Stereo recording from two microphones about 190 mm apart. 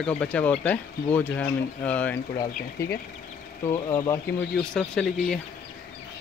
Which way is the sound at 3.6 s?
15° left (ahead or behind).